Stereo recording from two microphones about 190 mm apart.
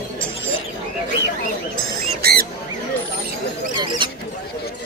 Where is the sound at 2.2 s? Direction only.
55° right (ahead or behind).